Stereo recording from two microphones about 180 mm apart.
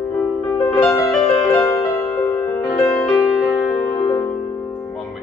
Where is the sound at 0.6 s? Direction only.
20° left (ahead or behind).